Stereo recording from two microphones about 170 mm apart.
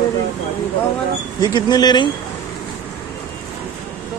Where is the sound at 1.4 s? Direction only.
25° left (ahead or behind).